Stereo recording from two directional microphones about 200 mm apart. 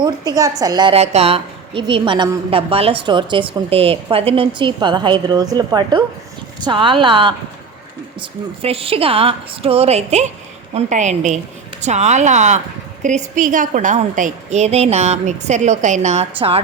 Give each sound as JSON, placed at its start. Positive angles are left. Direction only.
{"t": 0.0, "sound": "a woman's voice", "side_deg": -20}
{"t": 8.6, "sound": "a woman's voice", "side_deg": -30}